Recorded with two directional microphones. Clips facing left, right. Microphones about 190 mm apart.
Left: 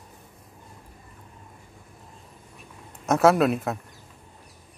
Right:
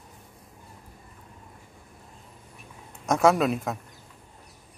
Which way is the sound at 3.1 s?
5° left (ahead or behind).